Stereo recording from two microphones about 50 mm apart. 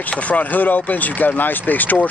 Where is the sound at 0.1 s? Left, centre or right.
Left.